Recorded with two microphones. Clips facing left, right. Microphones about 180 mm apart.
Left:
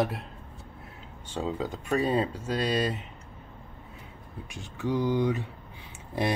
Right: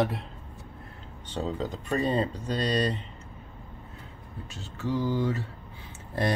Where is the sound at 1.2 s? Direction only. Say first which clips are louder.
Even; 10° left (ahead or behind).